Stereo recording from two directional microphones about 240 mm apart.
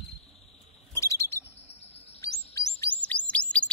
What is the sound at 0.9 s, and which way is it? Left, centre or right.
Bird, centre.